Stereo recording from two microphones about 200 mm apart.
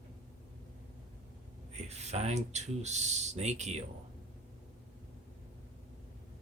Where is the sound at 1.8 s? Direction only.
35° right (ahead or behind).